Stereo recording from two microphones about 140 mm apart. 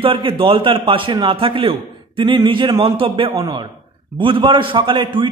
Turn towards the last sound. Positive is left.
turn(degrees=-35)  # may be behind; listen again after turning